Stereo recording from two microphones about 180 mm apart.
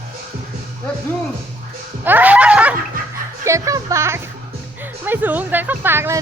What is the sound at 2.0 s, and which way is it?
Speech, 10° right (ahead or behind).